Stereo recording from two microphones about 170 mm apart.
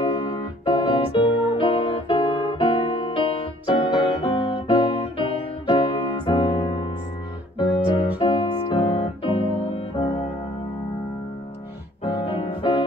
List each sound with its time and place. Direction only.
0.2 s music: 30° left (ahead or behind)
12.0 s keyboard: 30° left (ahead or behind)